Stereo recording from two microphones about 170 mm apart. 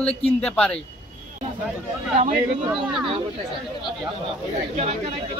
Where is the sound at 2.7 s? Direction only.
5° right (ahead or behind).